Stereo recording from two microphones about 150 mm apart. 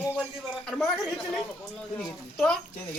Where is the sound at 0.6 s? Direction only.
Centre (ahead or behind).